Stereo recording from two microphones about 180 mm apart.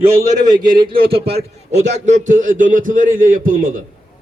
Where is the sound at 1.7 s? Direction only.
40° right (ahead or behind).